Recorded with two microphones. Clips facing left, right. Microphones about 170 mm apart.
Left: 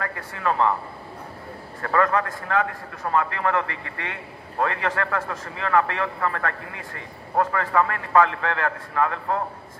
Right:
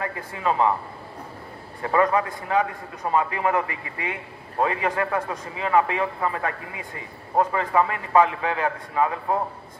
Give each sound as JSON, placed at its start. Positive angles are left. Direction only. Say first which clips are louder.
{"t": 0.0, "sound": "a man's voice", "louder": "right 1 dB", "side_deg": -15}
{"t": 1.8, "sound": "a man's voice", "louder": "right 1 dB", "side_deg": -15}